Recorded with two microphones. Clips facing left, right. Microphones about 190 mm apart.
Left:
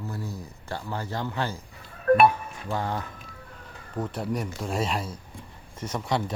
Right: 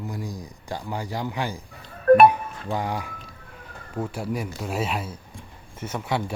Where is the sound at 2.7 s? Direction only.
15° right (ahead or behind).